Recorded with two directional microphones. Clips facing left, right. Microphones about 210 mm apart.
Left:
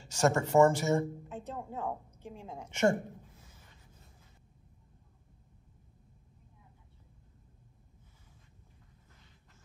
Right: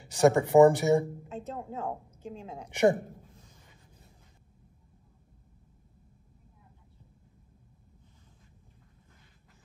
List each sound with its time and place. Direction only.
0.1 s a woman's voice: 15° right (ahead or behind)
1.5 s a woman's voice: centre (ahead or behind)
2.6 s a woman's voice: 15° right (ahead or behind)
3.3 s a sound: 5° left (ahead or behind)